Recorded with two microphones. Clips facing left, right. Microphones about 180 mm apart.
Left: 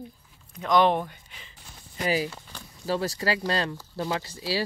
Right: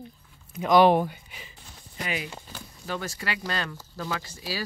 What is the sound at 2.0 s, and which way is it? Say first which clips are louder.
Speech: left 7 dB; 35° left (ahead or behind).